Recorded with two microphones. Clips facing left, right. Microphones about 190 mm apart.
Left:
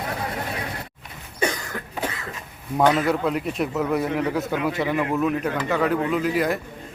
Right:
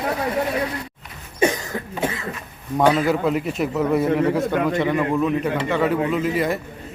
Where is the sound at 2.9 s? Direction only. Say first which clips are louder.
Right 2 dB; centre (ahead or behind).